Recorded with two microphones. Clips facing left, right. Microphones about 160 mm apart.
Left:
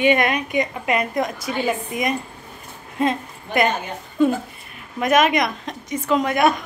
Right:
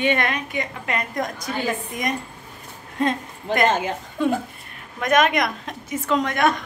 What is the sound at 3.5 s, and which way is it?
Speech, 90° right.